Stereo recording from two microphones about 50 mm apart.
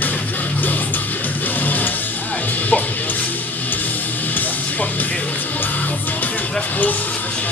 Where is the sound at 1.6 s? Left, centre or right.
Left.